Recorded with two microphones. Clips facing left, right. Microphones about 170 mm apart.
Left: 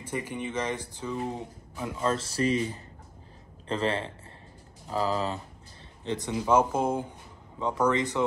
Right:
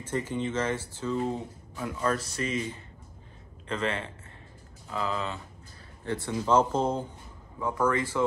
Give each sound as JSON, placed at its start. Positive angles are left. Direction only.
{"t": 0.0, "sound": "speech", "side_deg": 10}
{"t": 6.0, "sound": "speech", "side_deg": 15}
{"t": 7.5, "sound": "speech", "side_deg": 20}